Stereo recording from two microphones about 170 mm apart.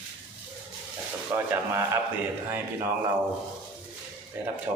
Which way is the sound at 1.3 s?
15° right (ahead or behind).